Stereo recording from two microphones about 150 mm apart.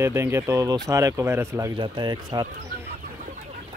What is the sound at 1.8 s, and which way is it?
Speech, 30° right (ahead or behind).